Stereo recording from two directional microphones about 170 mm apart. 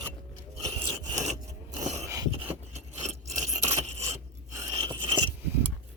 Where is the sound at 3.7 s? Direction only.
40° right (ahead or behind).